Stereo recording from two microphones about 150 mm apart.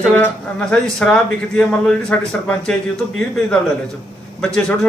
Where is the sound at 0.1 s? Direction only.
10° left (ahead or behind).